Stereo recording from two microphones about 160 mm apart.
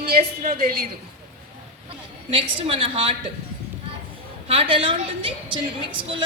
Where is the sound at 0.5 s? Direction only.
65° right (ahead or behind).